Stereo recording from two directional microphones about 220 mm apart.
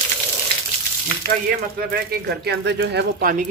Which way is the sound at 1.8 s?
45° right (ahead or behind).